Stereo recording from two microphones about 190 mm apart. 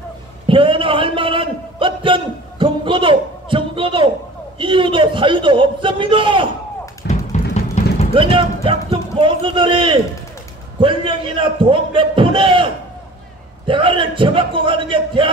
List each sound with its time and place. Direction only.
0.5 s a sound: 25° right (ahead or behind)
4.6 s a man's voice: 25° right (ahead or behind)
7.0 s music: 60° left (ahead or behind)
7.5 s music: 35° left (ahead or behind)
8.1 s a man's voice: 25° right (ahead or behind)
13.7 s a man's voice: 25° right (ahead or behind)